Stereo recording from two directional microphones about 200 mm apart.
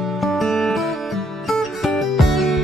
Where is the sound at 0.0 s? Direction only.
Centre (ahead or behind).